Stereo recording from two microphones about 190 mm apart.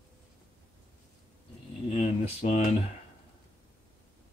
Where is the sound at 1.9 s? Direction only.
30° left (ahead or behind).